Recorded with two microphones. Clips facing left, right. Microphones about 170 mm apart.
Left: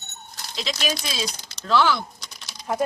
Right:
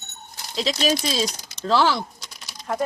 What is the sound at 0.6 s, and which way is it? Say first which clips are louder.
Speech: right 6 dB; 35° right (ahead or behind).